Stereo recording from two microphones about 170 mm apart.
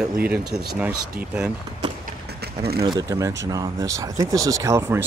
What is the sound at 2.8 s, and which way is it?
Speech, 25° right (ahead or behind).